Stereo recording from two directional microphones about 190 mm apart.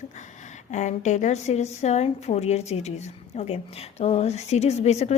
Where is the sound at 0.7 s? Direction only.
40° left (ahead or behind).